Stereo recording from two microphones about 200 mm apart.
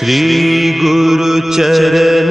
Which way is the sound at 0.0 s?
Centre (ahead or behind).